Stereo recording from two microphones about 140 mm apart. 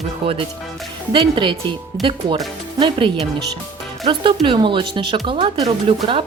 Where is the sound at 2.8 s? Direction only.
35° right (ahead or behind).